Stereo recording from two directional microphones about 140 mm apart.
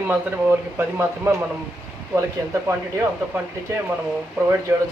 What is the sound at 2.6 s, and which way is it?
Speech, 15° right (ahead or behind).